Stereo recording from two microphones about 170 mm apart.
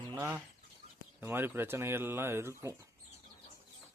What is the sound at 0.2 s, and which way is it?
Speech, 10° right (ahead or behind).